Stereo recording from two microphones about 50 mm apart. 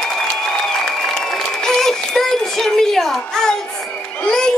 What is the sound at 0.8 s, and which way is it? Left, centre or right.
Applause, centre.